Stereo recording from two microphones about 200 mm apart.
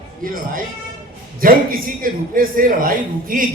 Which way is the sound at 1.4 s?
45° right (ahead or behind).